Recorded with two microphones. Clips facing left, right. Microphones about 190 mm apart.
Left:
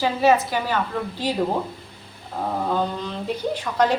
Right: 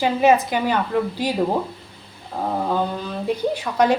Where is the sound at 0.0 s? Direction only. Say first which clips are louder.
Right 2 dB; 15° right (ahead or behind).